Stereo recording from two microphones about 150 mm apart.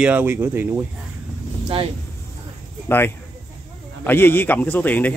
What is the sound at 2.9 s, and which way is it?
Speech, 15° left (ahead or behind).